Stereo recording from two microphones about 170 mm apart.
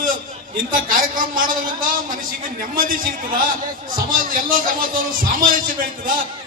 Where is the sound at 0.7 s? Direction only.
55° right (ahead or behind).